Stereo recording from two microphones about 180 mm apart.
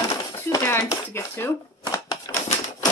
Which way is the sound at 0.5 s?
15° left (ahead or behind).